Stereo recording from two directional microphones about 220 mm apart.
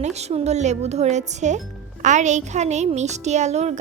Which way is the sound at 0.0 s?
30° right (ahead or behind).